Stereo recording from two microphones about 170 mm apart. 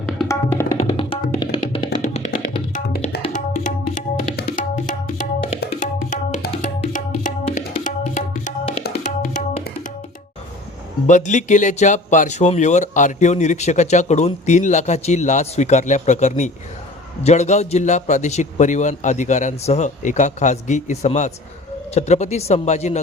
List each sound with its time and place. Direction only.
0.3 s tabla: 15° left (ahead or behind)
0.8 s music: 35° left (ahead or behind)
2.7 s music: 45° left (ahead or behind)
3.3 s tabla: 50° left (ahead or behind)
9.0 s music: 45° left (ahead or behind)
11.0 s speech: 45° left (ahead or behind)